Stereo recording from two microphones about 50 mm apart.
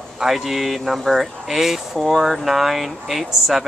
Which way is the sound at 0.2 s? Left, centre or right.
Centre.